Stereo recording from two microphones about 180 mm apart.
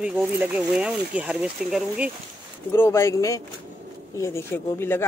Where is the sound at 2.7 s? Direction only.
15° left (ahead or behind).